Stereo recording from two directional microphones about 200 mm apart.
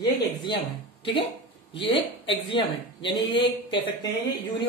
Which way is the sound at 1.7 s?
25° left (ahead or behind).